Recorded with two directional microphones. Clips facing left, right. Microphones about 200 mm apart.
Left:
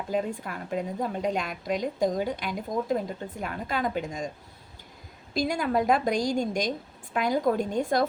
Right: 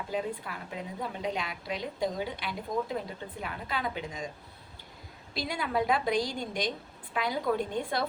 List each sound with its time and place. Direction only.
0.1 s a woman's voice: 45° left (ahead or behind)
5.3 s a woman's voice: 45° left (ahead or behind)